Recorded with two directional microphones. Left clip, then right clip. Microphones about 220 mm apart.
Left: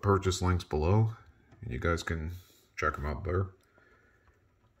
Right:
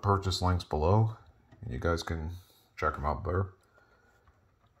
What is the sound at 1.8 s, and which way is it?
Speech, 25° left (ahead or behind).